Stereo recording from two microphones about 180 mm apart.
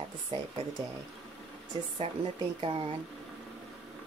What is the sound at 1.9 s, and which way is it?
Speech, 30° right (ahead or behind).